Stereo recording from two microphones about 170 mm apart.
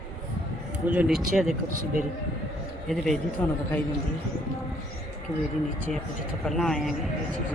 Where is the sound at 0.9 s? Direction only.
10° right (ahead or behind).